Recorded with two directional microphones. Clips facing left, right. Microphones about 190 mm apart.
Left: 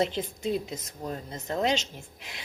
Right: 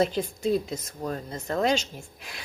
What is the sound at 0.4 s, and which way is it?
Speech, 20° left (ahead or behind).